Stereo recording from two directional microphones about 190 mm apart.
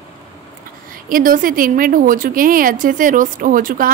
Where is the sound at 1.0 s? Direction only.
45° right (ahead or behind).